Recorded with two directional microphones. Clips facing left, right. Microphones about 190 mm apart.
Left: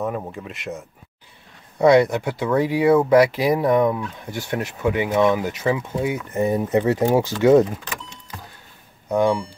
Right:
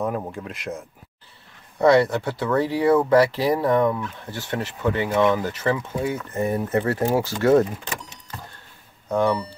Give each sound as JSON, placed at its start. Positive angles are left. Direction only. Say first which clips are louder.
{"t": 0.0, "sound": "speech", "louder": "even", "side_deg": 0}
{"t": 1.8, "sound": "speech", "louder": "left 2 dB", "side_deg": 15}
{"t": 9.1, "sound": "speech", "louder": "left 2 dB", "side_deg": 10}